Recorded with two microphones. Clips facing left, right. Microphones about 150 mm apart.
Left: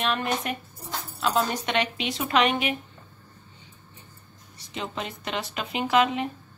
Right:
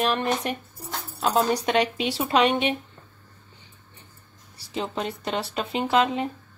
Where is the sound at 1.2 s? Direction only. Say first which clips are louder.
Right 3 dB; 40° right (ahead or behind).